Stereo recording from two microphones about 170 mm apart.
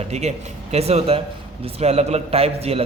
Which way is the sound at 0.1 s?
40° right (ahead or behind).